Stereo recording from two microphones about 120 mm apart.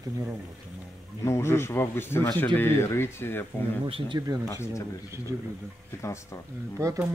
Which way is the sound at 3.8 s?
45° right (ahead or behind).